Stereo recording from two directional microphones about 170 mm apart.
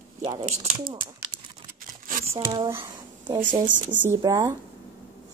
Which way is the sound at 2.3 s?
20° right (ahead or behind).